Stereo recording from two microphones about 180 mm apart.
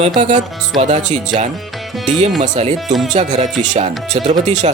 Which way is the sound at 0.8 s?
40° right (ahead or behind).